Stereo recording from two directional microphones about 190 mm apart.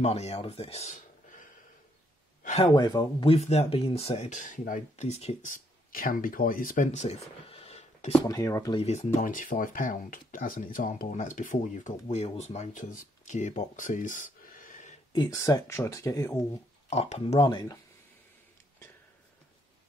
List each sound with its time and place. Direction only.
0.0 s speech: 35° left (ahead or behind)
2.7 s speech: 20° left (ahead or behind)
3.3 s speech: 35° left (ahead or behind)
8.3 s speech: 15° left (ahead or behind)
8.7 s speech: 35° left (ahead or behind)
15.1 s speech: 15° left (ahead or behind)
16.9 s speech: 35° left (ahead or behind)